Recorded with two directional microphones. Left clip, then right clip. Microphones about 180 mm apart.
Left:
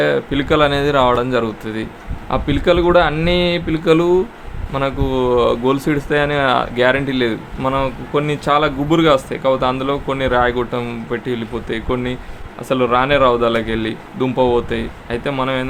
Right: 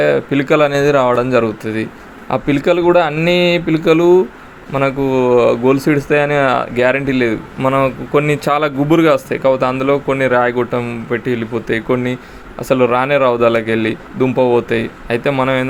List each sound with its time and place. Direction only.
0.0 s speech: 15° right (ahead or behind)